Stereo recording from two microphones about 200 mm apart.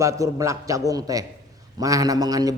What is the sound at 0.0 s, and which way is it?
A man's voice, 15° right (ahead or behind).